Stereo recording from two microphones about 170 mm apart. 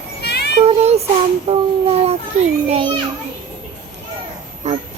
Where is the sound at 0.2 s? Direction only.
75° left (ahead or behind).